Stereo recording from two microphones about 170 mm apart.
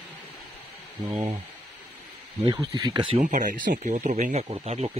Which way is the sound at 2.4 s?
25° right (ahead or behind).